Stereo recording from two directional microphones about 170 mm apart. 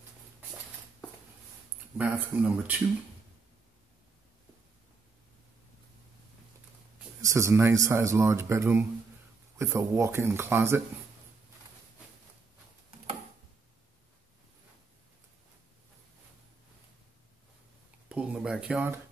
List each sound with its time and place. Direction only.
2.0 s speech: 10° right (ahead or behind)
7.2 s speech: 20° right (ahead or behind)
18.0 s a sound: 5° right (ahead or behind)